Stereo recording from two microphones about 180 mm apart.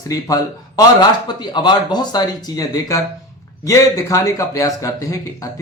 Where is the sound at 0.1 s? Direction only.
20° left (ahead or behind).